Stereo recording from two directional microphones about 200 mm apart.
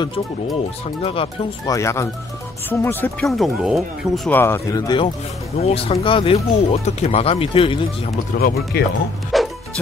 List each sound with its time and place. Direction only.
1.0 s speech: 25° left (ahead or behind)
1.8 s speech: 15° left (ahead or behind)
8.4 s speech: 50° left (ahead or behind)
9.3 s music: centre (ahead or behind)